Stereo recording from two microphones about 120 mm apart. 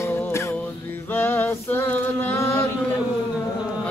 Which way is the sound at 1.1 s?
15° left (ahead or behind).